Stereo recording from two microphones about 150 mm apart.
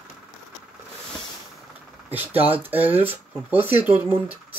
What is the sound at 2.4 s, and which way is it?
Speech, 40° right (ahead or behind).